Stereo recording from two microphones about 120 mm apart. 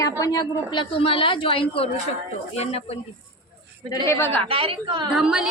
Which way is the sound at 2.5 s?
60° left (ahead or behind).